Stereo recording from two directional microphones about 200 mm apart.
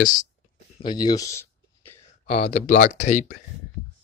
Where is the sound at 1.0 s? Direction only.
20° left (ahead or behind).